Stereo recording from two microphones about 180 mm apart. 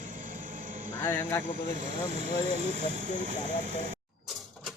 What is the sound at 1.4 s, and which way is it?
Speech, 45° right (ahead or behind).